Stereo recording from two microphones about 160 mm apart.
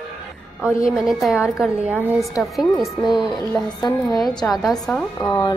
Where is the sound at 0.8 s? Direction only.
Centre (ahead or behind).